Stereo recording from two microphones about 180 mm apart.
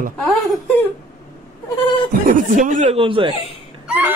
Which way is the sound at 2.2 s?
50° right (ahead or behind).